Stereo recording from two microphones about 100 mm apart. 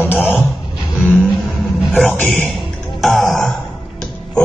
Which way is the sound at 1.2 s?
Centre (ahead or behind).